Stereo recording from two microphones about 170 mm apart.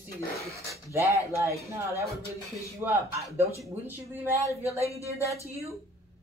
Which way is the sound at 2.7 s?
15° right (ahead or behind).